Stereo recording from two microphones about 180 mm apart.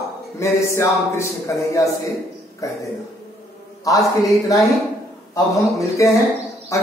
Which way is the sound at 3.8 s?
20° left (ahead or behind).